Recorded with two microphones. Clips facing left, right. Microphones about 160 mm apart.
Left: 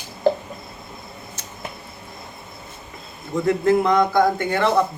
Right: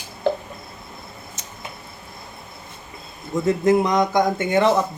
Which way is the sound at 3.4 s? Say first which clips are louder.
Even; 15° right (ahead or behind).